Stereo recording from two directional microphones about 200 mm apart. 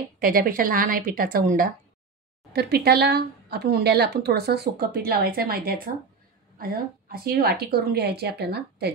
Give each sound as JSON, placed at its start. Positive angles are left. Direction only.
{"t": 0.2, "sound": "speech", "side_deg": -45}
{"t": 2.5, "sound": "speech", "side_deg": -55}